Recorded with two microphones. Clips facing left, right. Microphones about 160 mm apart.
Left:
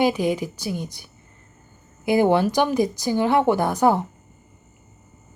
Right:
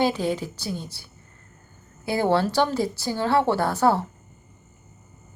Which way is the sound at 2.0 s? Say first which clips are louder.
Left 4 dB; 15° left (ahead or behind).